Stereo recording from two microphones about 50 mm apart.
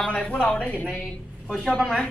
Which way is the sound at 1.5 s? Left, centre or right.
Centre.